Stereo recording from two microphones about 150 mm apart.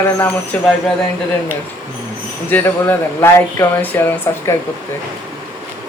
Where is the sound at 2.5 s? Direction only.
15° left (ahead or behind).